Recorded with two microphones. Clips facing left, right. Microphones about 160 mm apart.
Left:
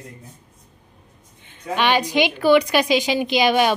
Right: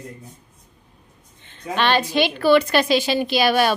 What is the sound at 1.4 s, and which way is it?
A woman's voice, 10° left (ahead or behind).